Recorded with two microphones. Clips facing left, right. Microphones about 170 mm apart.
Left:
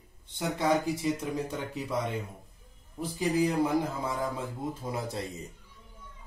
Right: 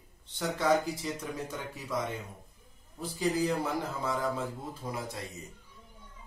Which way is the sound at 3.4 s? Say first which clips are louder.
Left 4 dB; 15° left (ahead or behind).